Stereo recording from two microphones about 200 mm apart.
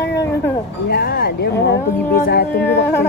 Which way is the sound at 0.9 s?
50° left (ahead or behind).